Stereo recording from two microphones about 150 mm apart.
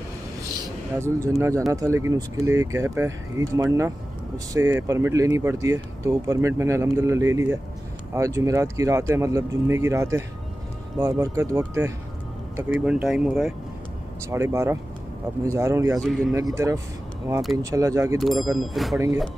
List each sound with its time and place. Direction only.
0.9 s speech: 15° right (ahead or behind)
12.5 s speech: 10° right (ahead or behind)
14.3 s speech: 20° right (ahead or behind)
16.0 s speech: centre (ahead or behind)
16.5 s speech: 20° right (ahead or behind)
18.2 s speech: centre (ahead or behind)